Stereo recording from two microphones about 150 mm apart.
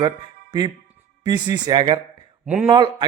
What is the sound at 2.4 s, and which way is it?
Speech, 10° right (ahead or behind).